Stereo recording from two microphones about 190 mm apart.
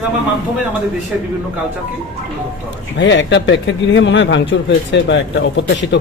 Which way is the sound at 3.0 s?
70° left (ahead or behind).